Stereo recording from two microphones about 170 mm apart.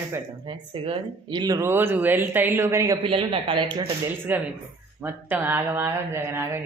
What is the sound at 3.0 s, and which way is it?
Speech, 30° right (ahead or behind).